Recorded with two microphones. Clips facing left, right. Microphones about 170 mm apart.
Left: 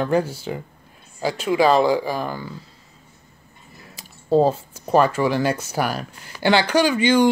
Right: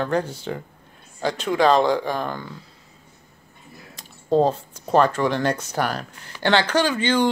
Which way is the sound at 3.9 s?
5° left (ahead or behind).